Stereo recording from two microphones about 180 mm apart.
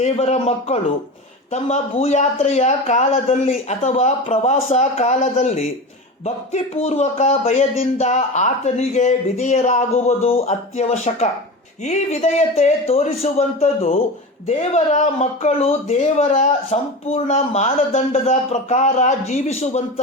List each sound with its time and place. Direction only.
0.0 s speech: 35° left (ahead or behind)